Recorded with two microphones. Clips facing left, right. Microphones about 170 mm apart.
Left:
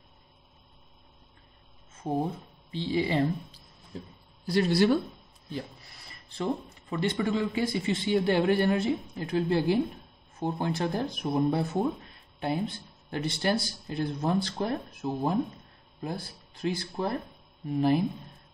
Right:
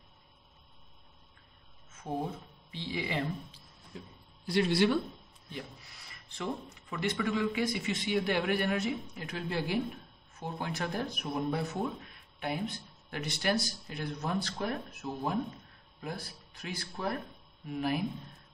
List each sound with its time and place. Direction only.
2.7 s a man's voice: 30° left (ahead or behind)
6.3 s a man's voice: 35° left (ahead or behind)